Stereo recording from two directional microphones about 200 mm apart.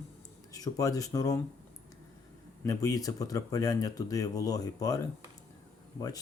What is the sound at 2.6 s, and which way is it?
Speech, 15° left (ahead or behind).